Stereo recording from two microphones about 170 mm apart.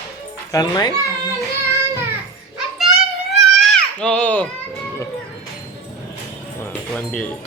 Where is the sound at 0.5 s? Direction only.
20° left (ahead or behind).